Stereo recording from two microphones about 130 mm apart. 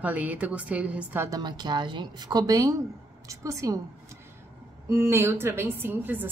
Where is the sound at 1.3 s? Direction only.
30° right (ahead or behind).